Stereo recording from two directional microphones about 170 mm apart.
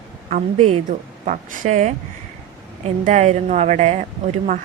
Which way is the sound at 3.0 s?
45° right (ahead or behind).